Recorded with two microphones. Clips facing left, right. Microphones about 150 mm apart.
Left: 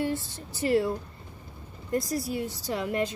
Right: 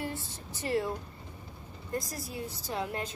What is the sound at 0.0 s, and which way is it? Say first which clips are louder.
Speech: left 8 dB; 80° left.